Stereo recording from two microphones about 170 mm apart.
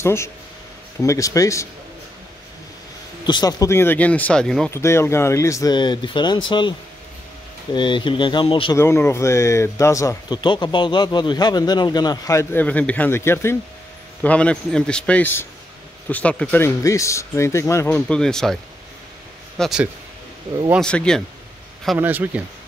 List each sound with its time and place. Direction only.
0.0 s speech: 15° left (ahead or behind)
3.3 s speech: 25° left (ahead or behind); by 4.7 s 5° left (ahead or behind)
4.7 s speech: 15° left (ahead or behind)
7.7 s speech: 30° left (ahead or behind)
8.7 s speech: 15° left (ahead or behind)
18.0 s speech: 5° left (ahead or behind)
19.6 s speech: 5° right (ahead or behind)
21.9 s speech: 10° right (ahead or behind)